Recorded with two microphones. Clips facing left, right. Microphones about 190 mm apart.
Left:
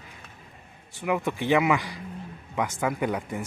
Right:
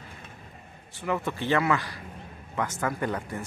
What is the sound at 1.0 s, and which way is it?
Speech, 15° left (ahead or behind).